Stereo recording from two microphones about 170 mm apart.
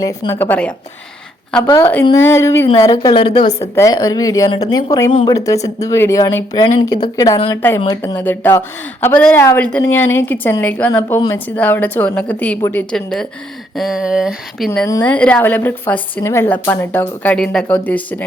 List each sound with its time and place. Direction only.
0.0 s a woman's voice: 20° left (ahead or behind); by 14.7 s 5° right (ahead or behind)
15.0 s a woman's voice: 10° left (ahead or behind)